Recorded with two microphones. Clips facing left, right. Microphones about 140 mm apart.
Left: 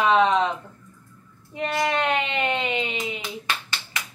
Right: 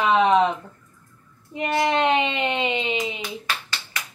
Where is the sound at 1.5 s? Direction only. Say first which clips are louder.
Right 3 dB; 20° right (ahead or behind).